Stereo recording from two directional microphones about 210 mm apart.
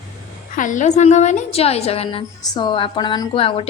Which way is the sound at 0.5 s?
40° left (ahead or behind).